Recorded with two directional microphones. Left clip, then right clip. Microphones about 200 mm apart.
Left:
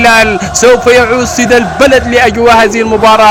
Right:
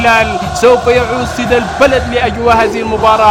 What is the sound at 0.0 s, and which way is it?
Speech, 20° left (ahead or behind).